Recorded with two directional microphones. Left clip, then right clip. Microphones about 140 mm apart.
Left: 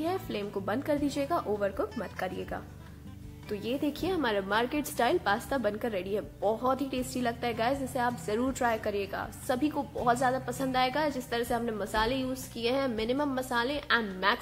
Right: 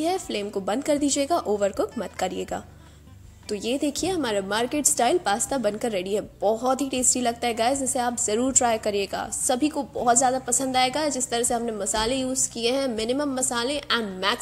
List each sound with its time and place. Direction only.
0.0 s a woman's voice: 30° right (ahead or behind)
3.4 s a woman's voice: 30° right (ahead or behind)